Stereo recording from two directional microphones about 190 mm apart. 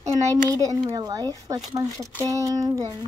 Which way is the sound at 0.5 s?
20° right (ahead or behind).